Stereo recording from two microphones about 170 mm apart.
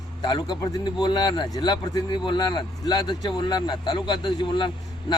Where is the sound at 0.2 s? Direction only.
25° left (ahead or behind).